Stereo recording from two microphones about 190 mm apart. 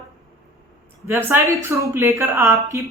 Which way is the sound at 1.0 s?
15° right (ahead or behind).